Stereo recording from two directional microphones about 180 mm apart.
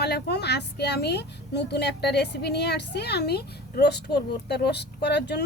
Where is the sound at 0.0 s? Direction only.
65° left (ahead or behind).